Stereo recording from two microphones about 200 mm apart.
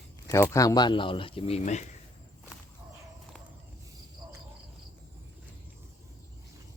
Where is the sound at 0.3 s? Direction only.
15° left (ahead or behind); by 1.8 s 35° left (ahead or behind).